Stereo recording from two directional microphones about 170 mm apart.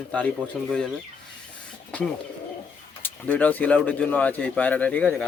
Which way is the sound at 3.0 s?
10° left (ahead or behind).